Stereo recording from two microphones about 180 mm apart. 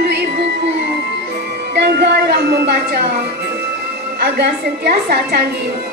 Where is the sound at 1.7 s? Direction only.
70° right (ahead or behind).